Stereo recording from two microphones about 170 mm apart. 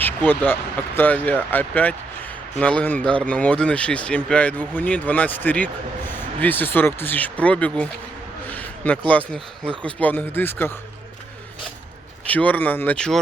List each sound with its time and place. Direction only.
0.0 s speech: 10° left (ahead or behind)
12.2 s speech: 10° left (ahead or behind)